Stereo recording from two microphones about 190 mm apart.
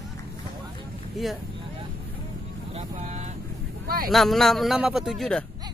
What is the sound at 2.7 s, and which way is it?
Vehicle, 35° right (ahead or behind).